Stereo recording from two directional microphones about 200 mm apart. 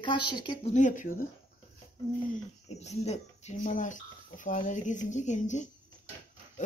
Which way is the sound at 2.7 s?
35° left (ahead or behind).